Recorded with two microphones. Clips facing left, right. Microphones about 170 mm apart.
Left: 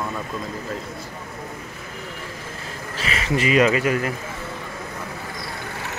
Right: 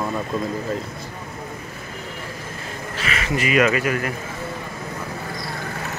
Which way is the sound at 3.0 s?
30° left (ahead or behind).